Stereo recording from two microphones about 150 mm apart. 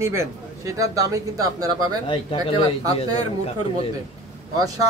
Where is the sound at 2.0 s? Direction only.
35° left (ahead or behind).